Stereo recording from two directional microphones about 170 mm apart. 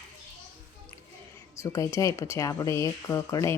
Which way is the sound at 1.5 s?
20° left (ahead or behind).